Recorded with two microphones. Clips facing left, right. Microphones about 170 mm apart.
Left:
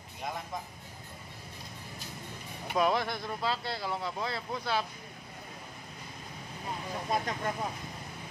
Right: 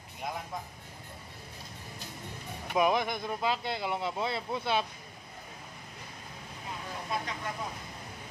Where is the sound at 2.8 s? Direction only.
15° right (ahead or behind).